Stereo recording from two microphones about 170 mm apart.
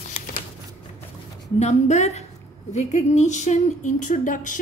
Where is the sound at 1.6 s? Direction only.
40° left (ahead or behind).